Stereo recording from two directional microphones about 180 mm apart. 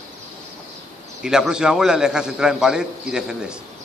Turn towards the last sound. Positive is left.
turn(degrees=-5)  # may be behind; listen again after turning